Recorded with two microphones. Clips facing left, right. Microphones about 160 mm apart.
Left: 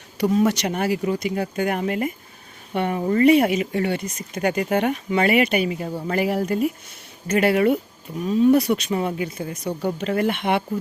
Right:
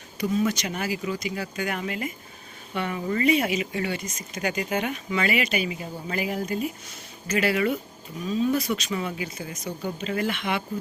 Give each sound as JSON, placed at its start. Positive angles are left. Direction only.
{"t": 0.2, "sound": "speech", "side_deg": 70}
{"t": 5.9, "sound": "speech", "side_deg": 65}